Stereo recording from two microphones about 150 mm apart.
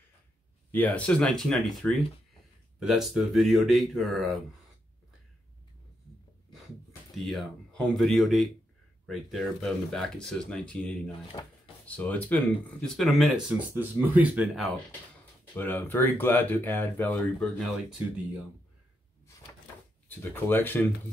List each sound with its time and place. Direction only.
0.7 s speech: 10° left (ahead or behind)
7.2 s speech: centre (ahead or behind)
11.1 s speech: 35° left (ahead or behind)
11.9 s speech: 10° left (ahead or behind)
13.6 s speech: 10° right (ahead or behind)
15.5 s speech: 10° left (ahead or behind)
20.2 s speech: 15° left (ahead or behind)